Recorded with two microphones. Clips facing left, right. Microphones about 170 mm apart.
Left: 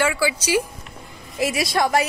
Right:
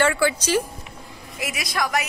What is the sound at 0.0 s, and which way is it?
Speech, 5° left (ahead or behind).